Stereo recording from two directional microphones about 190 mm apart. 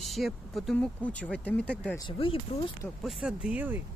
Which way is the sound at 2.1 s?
30° left (ahead or behind).